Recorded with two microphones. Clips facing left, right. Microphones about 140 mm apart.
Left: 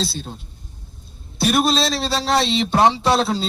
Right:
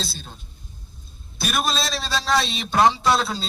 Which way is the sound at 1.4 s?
30° left (ahead or behind).